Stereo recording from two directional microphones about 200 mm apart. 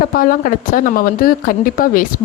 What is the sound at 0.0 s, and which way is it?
Speech, 45° left (ahead or behind).